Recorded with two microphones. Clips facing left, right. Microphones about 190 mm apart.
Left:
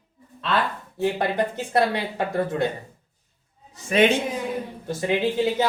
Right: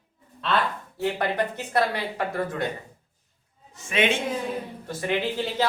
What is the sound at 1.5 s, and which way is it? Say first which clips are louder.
A woman's voice: left 3 dB; 25° left (ahead or behind).